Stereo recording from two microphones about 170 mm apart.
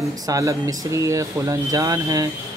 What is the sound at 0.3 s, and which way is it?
Speech, 20° right (ahead or behind).